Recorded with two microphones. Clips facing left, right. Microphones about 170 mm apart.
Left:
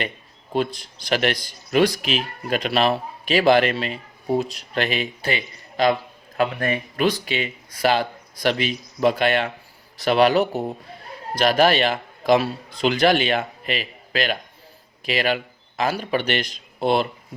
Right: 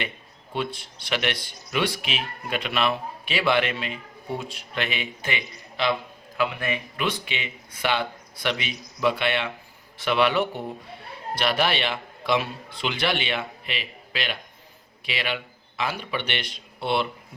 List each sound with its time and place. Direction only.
0.5 s speech: 40° left (ahead or behind)